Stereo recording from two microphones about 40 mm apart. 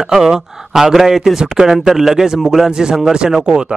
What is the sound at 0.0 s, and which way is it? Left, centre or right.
Speech, centre.